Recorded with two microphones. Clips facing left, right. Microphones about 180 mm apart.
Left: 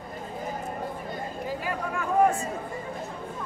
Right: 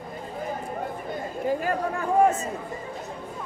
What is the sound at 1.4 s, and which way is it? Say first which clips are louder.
Speech: right 7 dB; 50° right (ahead or behind).